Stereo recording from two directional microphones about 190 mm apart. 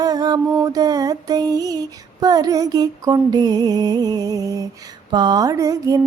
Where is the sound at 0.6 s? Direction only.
20° right (ahead or behind).